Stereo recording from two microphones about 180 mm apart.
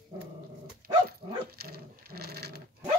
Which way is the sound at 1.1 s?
60° right (ahead or behind).